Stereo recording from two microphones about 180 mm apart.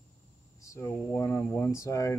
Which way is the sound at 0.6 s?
15° left (ahead or behind).